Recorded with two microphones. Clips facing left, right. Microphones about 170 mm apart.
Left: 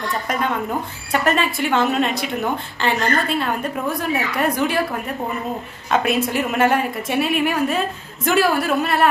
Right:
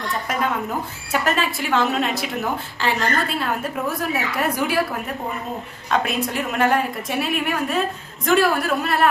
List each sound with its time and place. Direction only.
1.2 s a woman's voice: centre (ahead or behind)
5.9 s a woman's voice: 5° left (ahead or behind)